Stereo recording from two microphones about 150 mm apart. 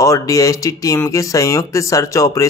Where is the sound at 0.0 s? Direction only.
20° left (ahead or behind).